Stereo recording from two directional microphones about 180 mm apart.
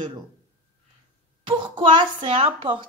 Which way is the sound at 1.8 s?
25° right (ahead or behind).